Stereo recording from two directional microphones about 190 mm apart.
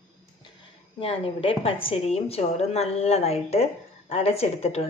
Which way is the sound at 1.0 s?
30° left (ahead or behind).